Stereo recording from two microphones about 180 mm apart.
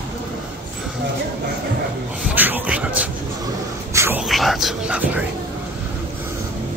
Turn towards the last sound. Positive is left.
turn(degrees=-5)  # may be behind; listen again after turning